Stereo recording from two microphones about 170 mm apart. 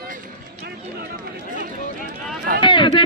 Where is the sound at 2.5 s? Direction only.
30° left (ahead or behind).